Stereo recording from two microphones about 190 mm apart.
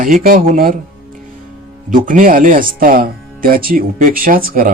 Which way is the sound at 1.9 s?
45° right (ahead or behind).